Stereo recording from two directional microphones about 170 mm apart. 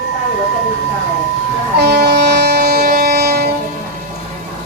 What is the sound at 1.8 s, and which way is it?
Train, 75° right (ahead or behind).